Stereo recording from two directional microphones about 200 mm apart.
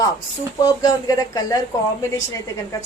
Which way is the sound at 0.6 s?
20° left (ahead or behind).